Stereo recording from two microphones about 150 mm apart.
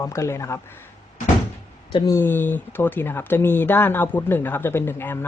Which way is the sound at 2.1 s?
15° left (ahead or behind).